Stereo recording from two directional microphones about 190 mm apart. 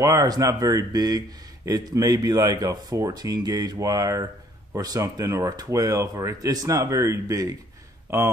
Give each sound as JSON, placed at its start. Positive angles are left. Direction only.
{"t": 0.0, "sound": "speech", "side_deg": -20}